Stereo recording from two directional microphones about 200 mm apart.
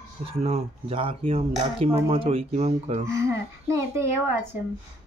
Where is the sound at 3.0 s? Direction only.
15° right (ahead or behind).